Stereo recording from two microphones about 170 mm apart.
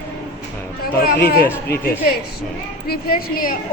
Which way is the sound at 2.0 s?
65° left (ahead or behind).